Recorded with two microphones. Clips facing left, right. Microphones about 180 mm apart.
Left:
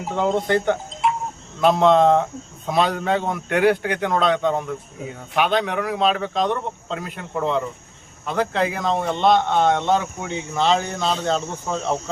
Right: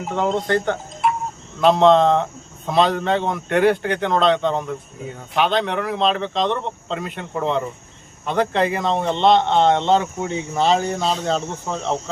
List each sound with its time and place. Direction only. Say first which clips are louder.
0.1 s a man's voice: even; 10° left (ahead or behind)
0.6 s music: even; 10° left (ahead or behind)
1.6 s a man's voice: right 1 dB; 5° left (ahead or behind)
9.2 s speech: right 2 dB; 25° right (ahead or behind)
10.7 s speech: right 1 dB; 10° right (ahead or behind)